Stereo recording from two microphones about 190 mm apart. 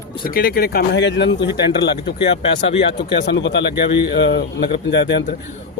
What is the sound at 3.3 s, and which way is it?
A man's voice, 70° left (ahead or behind).